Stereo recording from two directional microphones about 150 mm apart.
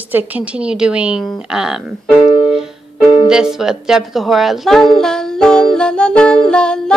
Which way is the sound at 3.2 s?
5° right (ahead or behind).